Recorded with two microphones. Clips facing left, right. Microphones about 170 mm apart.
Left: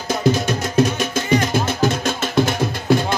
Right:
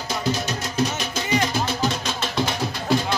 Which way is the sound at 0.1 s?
50° left (ahead or behind).